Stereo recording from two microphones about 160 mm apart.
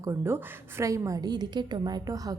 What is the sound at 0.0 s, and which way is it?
Speech, 15° right (ahead or behind).